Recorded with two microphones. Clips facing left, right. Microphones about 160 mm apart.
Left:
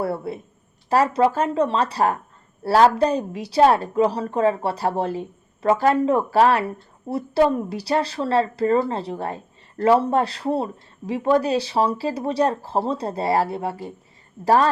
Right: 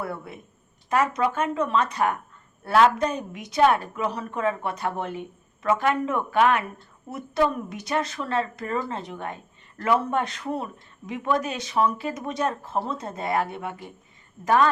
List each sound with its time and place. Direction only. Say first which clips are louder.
0.0 s speech: left 8 dB; 30° left (ahead or behind)